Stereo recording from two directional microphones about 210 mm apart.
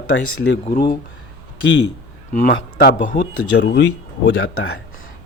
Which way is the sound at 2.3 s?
40° left (ahead or behind).